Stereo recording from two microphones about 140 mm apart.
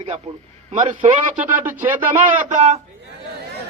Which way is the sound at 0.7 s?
65° right (ahead or behind).